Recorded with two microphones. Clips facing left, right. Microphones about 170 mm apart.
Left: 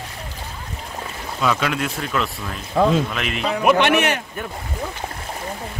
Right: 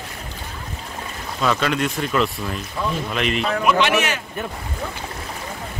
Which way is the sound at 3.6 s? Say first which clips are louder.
Left 4 dB; 55° left (ahead or behind).